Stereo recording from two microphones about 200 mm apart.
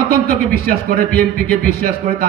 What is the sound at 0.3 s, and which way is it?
A man's voice, 45° right (ahead or behind).